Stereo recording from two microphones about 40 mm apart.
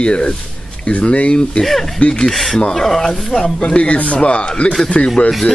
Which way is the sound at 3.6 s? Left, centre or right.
Left.